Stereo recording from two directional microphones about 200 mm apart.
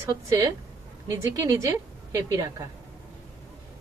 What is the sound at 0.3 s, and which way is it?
A woman's voice, 15° right (ahead or behind).